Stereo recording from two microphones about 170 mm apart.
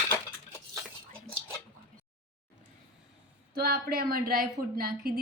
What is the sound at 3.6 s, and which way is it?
A woman's voice, 65° right (ahead or behind).